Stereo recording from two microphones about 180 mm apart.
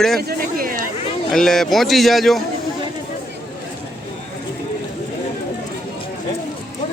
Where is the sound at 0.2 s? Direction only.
55° right (ahead or behind).